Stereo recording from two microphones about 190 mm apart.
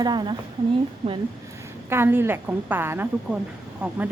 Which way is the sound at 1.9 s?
10° right (ahead or behind).